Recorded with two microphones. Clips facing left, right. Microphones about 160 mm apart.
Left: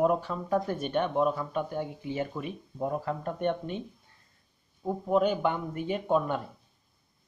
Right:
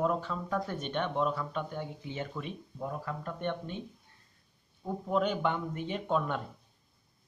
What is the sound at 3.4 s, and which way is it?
Speech, 15° left (ahead or behind).